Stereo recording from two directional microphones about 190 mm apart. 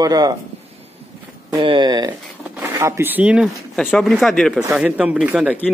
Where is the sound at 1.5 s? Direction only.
25° right (ahead or behind); by 5.5 s 5° right (ahead or behind).